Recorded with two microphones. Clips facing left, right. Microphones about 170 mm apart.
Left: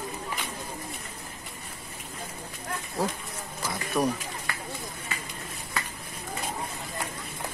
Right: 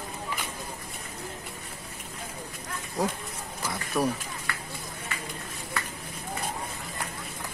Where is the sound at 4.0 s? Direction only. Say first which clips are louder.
Left 1 dB; 15° left (ahead or behind).